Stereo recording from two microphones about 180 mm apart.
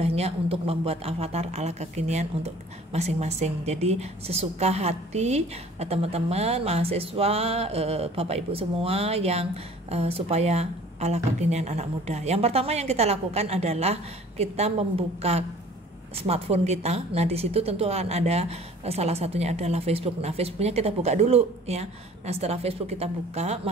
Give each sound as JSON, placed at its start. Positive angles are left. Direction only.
{"t": 0.0, "sound": "a woman's voice", "side_deg": -35}